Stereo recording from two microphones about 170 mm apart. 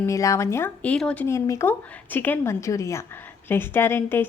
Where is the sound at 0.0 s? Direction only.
20° left (ahead or behind).